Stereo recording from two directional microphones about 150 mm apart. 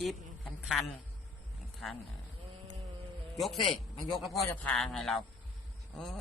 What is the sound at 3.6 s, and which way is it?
Speech, 35° left (ahead or behind).